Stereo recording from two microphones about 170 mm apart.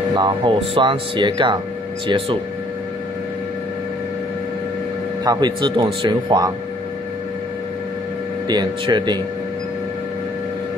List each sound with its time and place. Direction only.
0.1 s speech: 30° right (ahead or behind)
5.2 s speech: 25° right (ahead or behind)
8.5 s speech: 25° right (ahead or behind)